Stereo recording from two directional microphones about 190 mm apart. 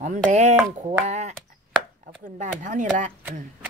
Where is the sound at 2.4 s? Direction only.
40° right (ahead or behind).